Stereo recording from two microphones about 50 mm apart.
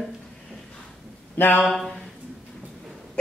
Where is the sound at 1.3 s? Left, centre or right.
Left.